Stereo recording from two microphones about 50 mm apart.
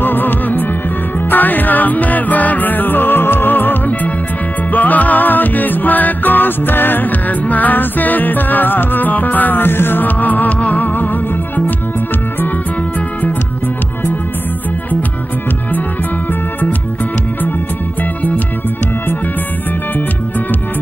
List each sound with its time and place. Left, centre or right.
0.0 s music: left